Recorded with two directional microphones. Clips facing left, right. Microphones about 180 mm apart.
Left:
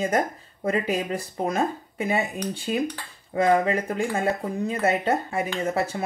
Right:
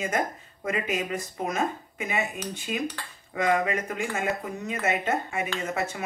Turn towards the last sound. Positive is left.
turn(degrees=35)  # may be behind; listen again after turning